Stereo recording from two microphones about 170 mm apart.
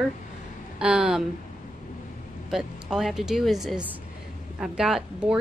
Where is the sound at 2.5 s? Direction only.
5° right (ahead or behind).